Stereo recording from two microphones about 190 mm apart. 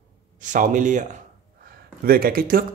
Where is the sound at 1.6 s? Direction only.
50° right (ahead or behind).